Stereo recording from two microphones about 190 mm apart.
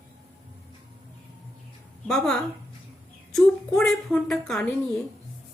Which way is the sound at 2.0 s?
5° left (ahead or behind).